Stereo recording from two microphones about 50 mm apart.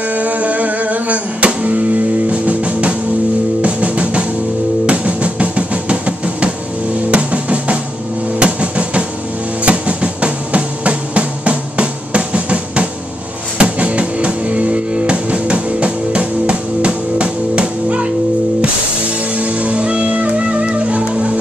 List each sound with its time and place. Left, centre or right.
0.1 s music: right
8.4 s drum: right
9.7 s music: right
19.3 s music: right